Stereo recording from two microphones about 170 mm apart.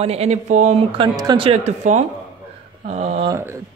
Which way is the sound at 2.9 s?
40° right (ahead or behind).